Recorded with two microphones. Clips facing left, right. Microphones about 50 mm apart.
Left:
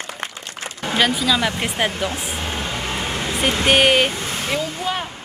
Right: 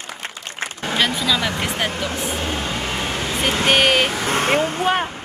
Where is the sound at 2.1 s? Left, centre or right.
Right.